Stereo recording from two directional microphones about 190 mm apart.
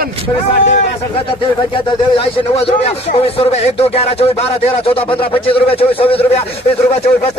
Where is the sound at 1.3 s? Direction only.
30° left (ahead or behind).